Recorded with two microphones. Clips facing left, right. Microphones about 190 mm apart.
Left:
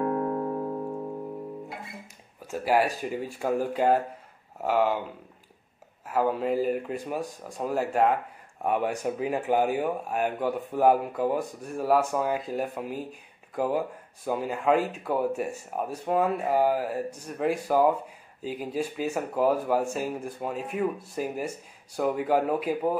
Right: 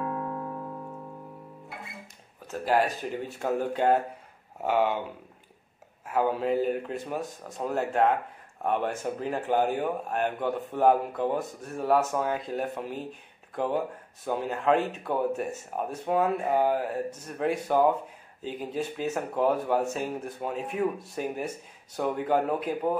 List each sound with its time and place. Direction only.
0.0 s music: 35° left (ahead or behind)
2.6 s speech: 10° left (ahead or behind)
6.0 s speech: centre (ahead or behind)